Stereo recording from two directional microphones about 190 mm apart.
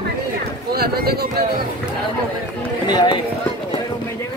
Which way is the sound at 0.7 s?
55° right (ahead or behind).